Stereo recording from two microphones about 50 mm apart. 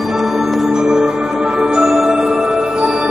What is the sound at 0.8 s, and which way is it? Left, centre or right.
Music, centre.